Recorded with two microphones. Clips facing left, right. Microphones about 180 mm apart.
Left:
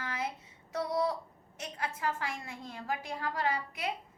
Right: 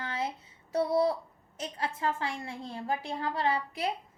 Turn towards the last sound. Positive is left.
turn(degrees=-30)  # may be behind; listen again after turning